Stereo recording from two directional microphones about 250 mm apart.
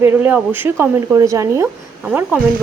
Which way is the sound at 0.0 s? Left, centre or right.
Centre.